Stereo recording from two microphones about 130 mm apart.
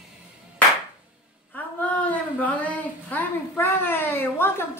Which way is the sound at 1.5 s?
10° left (ahead or behind).